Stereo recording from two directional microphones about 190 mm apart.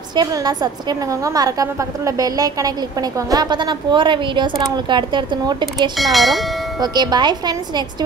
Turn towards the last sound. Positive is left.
turn(degrees=-20)  # may be behind; listen again after turning